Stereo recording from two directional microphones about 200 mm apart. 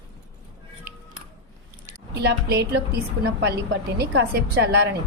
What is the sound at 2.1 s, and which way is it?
A woman's voice, 55° right (ahead or behind).